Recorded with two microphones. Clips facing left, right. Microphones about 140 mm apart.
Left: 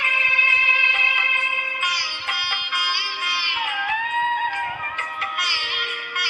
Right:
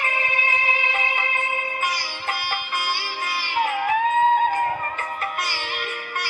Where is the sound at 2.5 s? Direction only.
40° right (ahead or behind).